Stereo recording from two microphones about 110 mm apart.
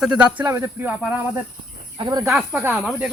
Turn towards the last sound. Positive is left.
turn(degrees=-5)  # may be behind; listen again after turning